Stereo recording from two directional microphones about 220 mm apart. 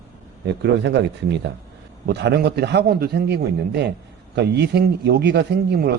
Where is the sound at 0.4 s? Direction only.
50° right (ahead or behind).